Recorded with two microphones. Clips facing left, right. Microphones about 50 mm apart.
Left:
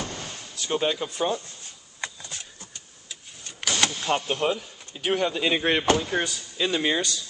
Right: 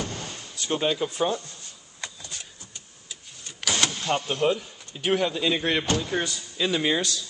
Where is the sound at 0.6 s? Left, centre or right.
Centre.